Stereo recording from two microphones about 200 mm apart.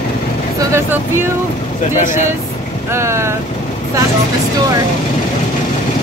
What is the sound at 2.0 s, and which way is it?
Speech, 40° left (ahead or behind).